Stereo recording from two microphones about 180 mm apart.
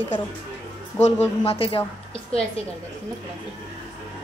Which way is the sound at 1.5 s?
30° left (ahead or behind).